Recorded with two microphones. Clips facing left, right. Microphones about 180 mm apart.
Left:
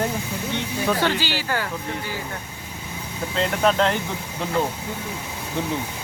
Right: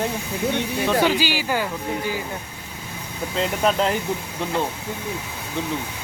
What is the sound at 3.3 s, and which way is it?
Speech, 5° right (ahead or behind).